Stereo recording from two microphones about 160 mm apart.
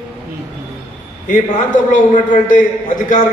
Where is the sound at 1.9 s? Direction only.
55° left (ahead or behind).